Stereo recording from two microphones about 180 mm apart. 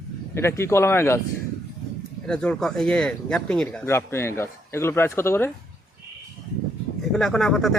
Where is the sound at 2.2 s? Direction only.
5° left (ahead or behind).